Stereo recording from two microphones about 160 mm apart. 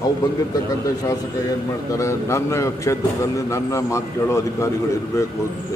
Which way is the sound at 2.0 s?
20° left (ahead or behind).